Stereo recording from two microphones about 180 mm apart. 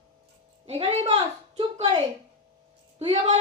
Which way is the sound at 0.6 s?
35° right (ahead or behind).